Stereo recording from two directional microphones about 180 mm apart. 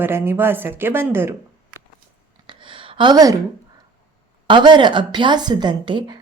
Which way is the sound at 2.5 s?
30° right (ahead or behind).